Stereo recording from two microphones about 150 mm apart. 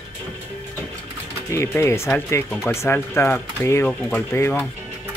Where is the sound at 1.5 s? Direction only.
20° left (ahead or behind).